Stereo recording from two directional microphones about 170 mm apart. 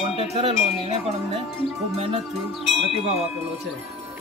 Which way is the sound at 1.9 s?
35° right (ahead or behind).